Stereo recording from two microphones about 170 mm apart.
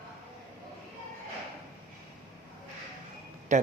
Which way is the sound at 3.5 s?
45° right (ahead or behind).